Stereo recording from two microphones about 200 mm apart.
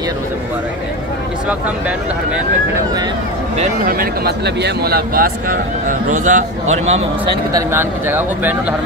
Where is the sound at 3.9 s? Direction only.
50° right (ahead or behind); by 7.0 s 35° right (ahead or behind).